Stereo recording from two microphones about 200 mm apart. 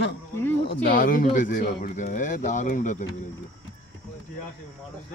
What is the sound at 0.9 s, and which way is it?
Speech, 40° left (ahead or behind).